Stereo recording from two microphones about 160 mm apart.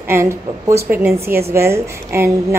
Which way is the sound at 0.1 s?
15° right (ahead or behind).